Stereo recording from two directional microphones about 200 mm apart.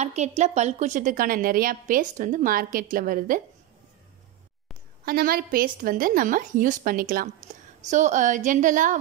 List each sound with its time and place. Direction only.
0.0 s a woman's voice: 35° right (ahead or behind)
5.0 s a woman's voice: 50° right (ahead or behind)